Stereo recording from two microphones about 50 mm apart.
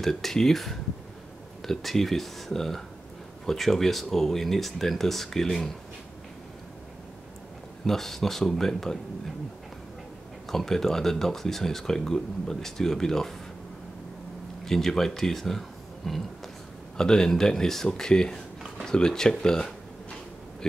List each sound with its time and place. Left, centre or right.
0.0 s speech: centre
7.8 s speech: centre
10.5 s speech: centre
14.6 s speech: centre